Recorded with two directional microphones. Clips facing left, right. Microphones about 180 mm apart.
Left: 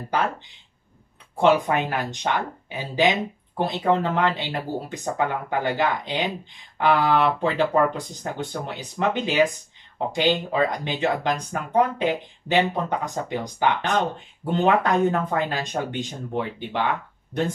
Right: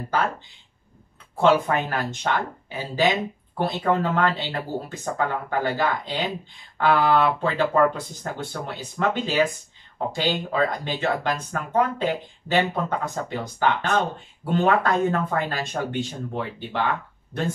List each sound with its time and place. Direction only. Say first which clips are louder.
1.3 s speech: even; 15° left (ahead or behind)